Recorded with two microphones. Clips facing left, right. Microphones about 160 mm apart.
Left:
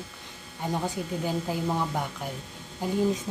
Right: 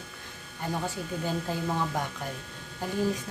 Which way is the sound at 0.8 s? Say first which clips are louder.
Left 2 dB; 15° left (ahead or behind).